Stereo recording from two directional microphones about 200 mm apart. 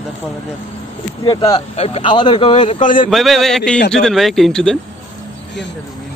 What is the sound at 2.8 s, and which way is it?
Speech, 40° left (ahead or behind).